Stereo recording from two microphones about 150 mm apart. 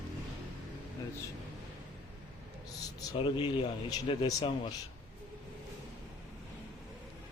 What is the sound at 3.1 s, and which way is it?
Speech, 35° left (ahead or behind).